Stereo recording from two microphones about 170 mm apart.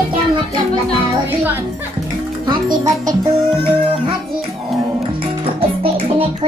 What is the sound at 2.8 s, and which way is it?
Music, 20° right (ahead or behind).